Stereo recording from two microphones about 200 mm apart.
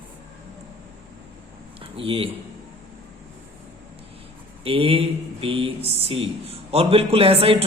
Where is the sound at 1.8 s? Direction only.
30° right (ahead or behind).